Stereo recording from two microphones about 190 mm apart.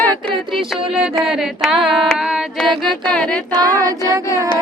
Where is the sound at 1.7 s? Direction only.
25° right (ahead or behind).